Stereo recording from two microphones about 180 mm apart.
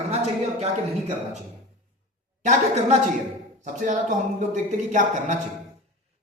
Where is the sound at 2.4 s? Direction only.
40° right (ahead or behind).